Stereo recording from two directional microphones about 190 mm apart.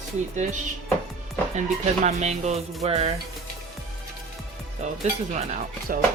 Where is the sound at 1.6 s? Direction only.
40° right (ahead or behind).